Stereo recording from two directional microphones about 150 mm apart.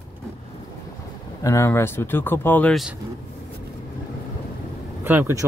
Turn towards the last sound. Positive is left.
turn(degrees=-15)  # may be behind; listen again after turning